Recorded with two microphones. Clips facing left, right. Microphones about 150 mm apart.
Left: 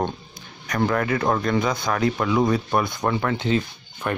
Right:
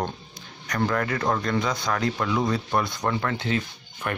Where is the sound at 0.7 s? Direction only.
20° left (ahead or behind).